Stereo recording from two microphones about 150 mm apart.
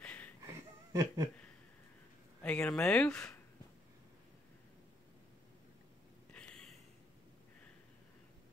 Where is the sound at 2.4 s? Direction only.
5° left (ahead or behind).